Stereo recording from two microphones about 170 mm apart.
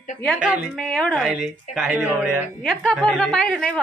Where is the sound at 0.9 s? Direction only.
5° left (ahead or behind).